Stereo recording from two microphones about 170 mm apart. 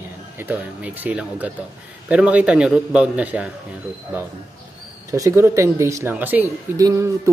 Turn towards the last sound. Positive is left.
turn(degrees=-20)  # may be behind; listen again after turning